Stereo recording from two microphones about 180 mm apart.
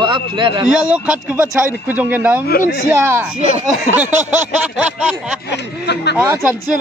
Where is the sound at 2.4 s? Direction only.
55° left (ahead or behind).